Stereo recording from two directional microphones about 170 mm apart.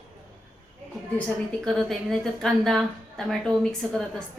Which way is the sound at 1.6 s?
Centre (ahead or behind).